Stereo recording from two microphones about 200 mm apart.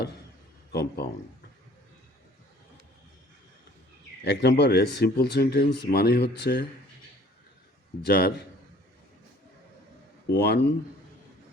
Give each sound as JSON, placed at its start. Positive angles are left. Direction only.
{"t": 0.7, "sound": "speech", "side_deg": 55}
{"t": 4.2, "sound": "speech", "side_deg": 55}
{"t": 8.0, "sound": "speech", "side_deg": 50}
{"t": 10.2, "sound": "speech", "side_deg": 55}